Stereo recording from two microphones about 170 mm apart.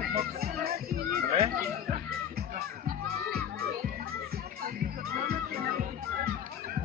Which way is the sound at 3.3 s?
65° right (ahead or behind).